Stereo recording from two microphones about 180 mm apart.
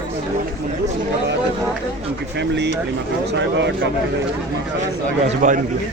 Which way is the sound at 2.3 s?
70° right (ahead or behind).